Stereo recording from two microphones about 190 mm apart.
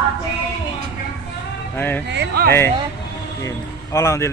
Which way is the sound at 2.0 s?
60° right (ahead or behind).